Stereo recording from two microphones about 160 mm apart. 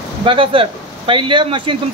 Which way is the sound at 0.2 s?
35° right (ahead or behind).